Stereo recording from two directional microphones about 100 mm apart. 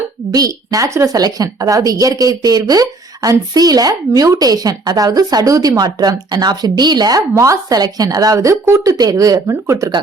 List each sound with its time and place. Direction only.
0.3 s speech: 40° right (ahead or behind)
7.2 s speech: 30° right (ahead or behind)